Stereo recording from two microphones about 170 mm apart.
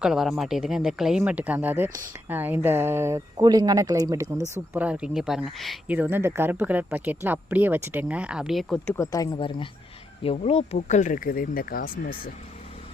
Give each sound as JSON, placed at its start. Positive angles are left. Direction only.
{"t": 0.0, "sound": "speech", "side_deg": -5}
{"t": 4.7, "sound": "speech", "side_deg": -10}
{"t": 9.0, "sound": "speech", "side_deg": 20}